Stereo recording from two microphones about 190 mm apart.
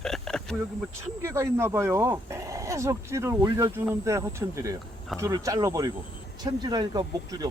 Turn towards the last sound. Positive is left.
turn(degrees=-20)  # may be behind; listen again after turning